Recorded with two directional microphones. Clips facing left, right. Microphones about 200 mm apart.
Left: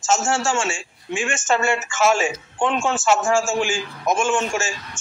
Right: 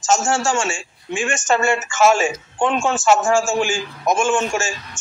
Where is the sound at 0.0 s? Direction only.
45° right (ahead or behind).